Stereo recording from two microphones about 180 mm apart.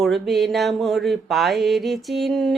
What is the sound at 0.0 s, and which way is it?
Mantra, centre (ahead or behind).